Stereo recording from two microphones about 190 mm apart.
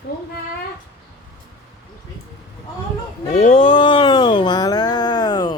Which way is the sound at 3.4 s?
30° left (ahead or behind).